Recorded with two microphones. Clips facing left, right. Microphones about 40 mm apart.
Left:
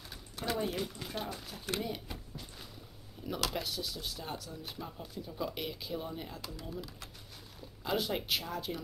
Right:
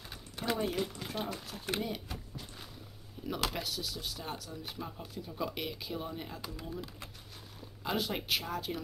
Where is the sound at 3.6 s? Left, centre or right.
Centre; by 7.1 s right.